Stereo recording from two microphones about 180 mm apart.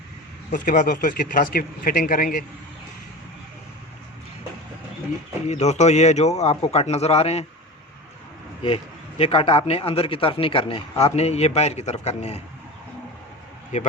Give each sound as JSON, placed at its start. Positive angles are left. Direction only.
{"t": 0.5, "sound": "a man's voice", "side_deg": 45}
{"t": 5.5, "sound": "a man's voice", "side_deg": 40}
{"t": 8.6, "sound": "a man's voice", "side_deg": 30}
{"t": 13.7, "sound": "a man's voice", "side_deg": 45}